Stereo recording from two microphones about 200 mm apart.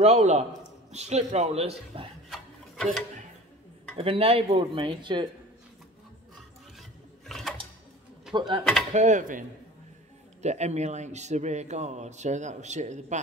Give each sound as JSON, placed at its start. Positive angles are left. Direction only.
{"t": 0.0, "sound": "a man's voice", "side_deg": -35}
{"t": 2.2, "sound": "rub", "side_deg": 0}
{"t": 3.9, "sound": "speech", "side_deg": -30}
{"t": 6.8, "sound": "a sound", "side_deg": 0}
{"t": 8.3, "sound": "speech", "side_deg": -25}
{"t": 8.9, "sound": "a man's voice", "side_deg": -40}
{"t": 10.4, "sound": "a man's voice", "side_deg": -35}